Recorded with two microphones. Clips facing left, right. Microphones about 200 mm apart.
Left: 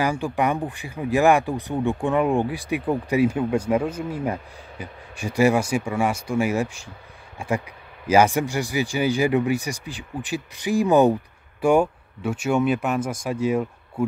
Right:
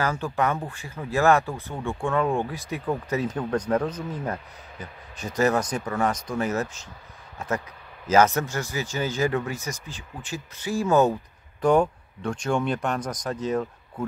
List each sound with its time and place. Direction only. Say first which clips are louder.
0.0 s speech: left 3 dB; 15° left (ahead or behind)